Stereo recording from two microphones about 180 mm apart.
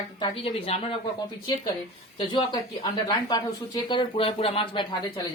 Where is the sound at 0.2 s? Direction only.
30° left (ahead or behind).